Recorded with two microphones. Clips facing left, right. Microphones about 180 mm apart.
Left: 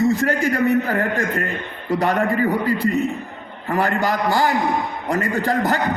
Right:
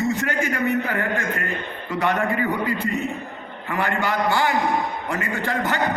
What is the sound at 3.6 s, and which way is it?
A man's voice, 35° left (ahead or behind).